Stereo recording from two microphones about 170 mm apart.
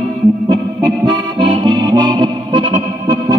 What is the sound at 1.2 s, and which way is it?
Accordion, 25° right (ahead or behind).